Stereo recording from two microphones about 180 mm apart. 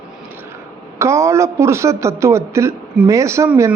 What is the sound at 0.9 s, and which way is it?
A man's voice, 15° right (ahead or behind).